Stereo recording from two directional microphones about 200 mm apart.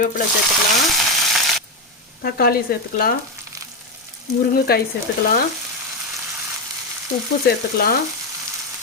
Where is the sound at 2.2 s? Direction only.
50° left (ahead or behind).